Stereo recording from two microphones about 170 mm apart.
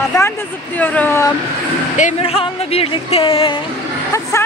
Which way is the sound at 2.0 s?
40° left (ahead or behind).